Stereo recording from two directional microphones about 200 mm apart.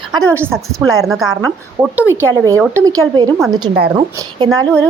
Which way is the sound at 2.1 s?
10° right (ahead or behind).